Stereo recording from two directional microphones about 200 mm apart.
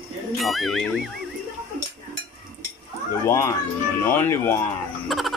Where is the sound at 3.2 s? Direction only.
15° left (ahead or behind).